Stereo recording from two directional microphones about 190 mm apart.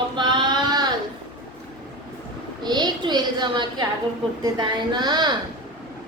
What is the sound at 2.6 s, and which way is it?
Speech, 20° right (ahead or behind).